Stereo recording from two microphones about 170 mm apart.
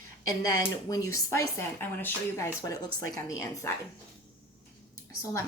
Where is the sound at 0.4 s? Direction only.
20° left (ahead or behind).